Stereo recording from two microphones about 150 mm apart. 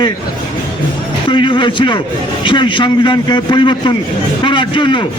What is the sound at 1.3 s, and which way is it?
A man's voice, 30° left (ahead or behind).